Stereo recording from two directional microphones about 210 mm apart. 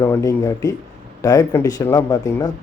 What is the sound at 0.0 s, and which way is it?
Speech, 15° left (ahead or behind).